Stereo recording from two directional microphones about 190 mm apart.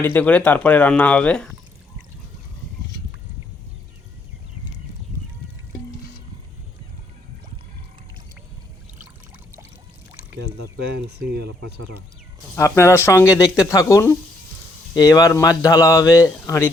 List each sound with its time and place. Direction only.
0.0 s speech: 10° left (ahead or behind)
10.8 s speech: 55° right (ahead or behind); by 11.9 s 75° right (ahead or behind)
12.5 s speech: 15° left (ahead or behind)